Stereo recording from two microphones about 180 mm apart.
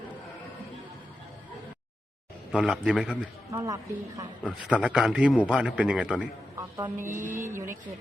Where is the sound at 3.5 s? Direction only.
20° right (ahead or behind).